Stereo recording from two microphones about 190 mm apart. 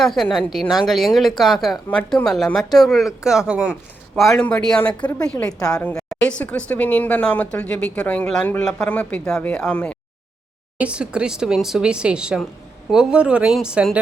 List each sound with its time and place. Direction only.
0.0 s a woman's voice: centre (ahead or behind)
5.7 s a man's voice: 15° left (ahead or behind)
6.1 s a sound: 5° left (ahead or behind)
6.7 s a man's voice: 10° left (ahead or behind)
10.8 s a woman's voice: 5° right (ahead or behind)